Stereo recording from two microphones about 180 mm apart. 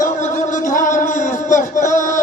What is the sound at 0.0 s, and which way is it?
Music, 45° left (ahead or behind).